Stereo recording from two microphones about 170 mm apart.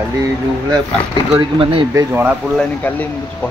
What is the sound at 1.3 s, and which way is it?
Speech, 30° right (ahead or behind).